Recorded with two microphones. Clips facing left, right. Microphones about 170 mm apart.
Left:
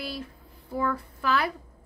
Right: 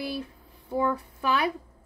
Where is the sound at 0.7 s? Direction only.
20° right (ahead or behind).